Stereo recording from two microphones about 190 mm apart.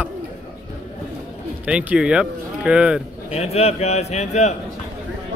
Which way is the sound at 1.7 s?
5° right (ahead or behind).